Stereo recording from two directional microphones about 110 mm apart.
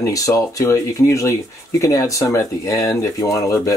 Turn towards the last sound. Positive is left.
turn(degrees=30)  # may be behind; listen again after turning